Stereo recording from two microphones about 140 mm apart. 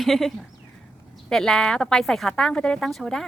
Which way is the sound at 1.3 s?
5° left (ahead or behind).